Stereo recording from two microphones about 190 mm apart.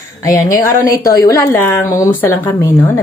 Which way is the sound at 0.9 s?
20° left (ahead or behind).